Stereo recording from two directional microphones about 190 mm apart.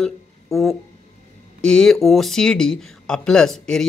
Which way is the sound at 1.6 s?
5° left (ahead or behind).